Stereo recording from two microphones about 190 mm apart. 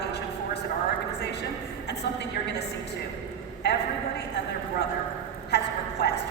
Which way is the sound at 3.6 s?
60° left (ahead or behind).